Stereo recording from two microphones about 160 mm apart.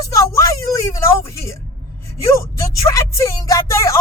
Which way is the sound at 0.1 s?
20° left (ahead or behind).